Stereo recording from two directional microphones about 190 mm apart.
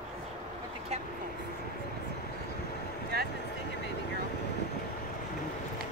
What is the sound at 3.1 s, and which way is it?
Speech, 55° right (ahead or behind).